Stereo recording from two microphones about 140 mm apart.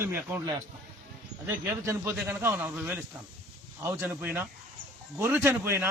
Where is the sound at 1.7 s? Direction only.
20° right (ahead or behind).